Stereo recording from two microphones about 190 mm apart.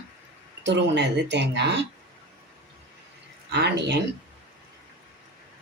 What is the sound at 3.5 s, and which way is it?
Speech, 60° right (ahead or behind).